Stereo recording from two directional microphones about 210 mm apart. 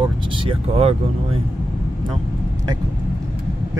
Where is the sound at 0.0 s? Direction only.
25° right (ahead or behind).